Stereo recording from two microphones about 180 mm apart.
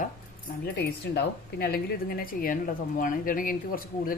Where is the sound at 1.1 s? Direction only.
60° left (ahead or behind).